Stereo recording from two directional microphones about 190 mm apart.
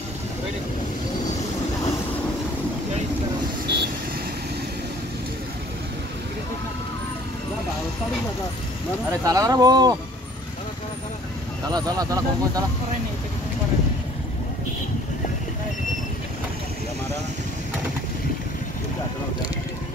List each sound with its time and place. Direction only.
3.6 s vehicle: 60° right (ahead or behind)
9.2 s speech: 20° right (ahead or behind)
11.7 s speech: 20° right (ahead or behind)